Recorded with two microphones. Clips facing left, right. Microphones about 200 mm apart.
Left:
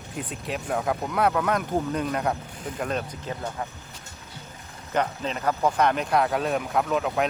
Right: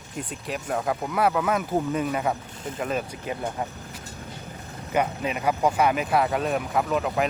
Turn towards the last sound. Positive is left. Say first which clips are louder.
# even
turn(degrees=0)  # may be behind; listen again after turning